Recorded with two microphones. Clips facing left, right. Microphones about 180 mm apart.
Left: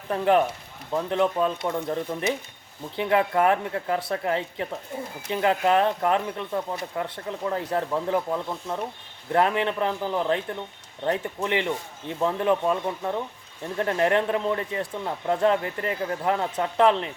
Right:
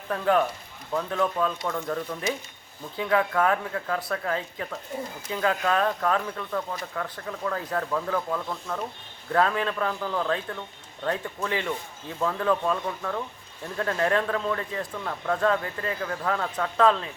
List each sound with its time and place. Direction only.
0.1 s speech: 20° left (ahead or behind)